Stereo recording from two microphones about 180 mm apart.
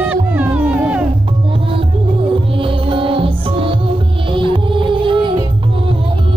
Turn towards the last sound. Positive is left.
turn(degrees=-25)  # may be behind; listen again after turning